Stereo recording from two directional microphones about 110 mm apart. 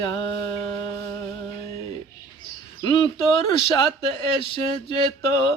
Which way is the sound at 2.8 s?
45° left (ahead or behind).